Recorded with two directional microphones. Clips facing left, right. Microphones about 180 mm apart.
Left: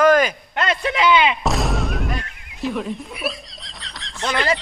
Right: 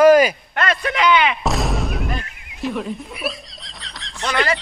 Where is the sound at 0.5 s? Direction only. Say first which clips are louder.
Even; 20° left (ahead or behind).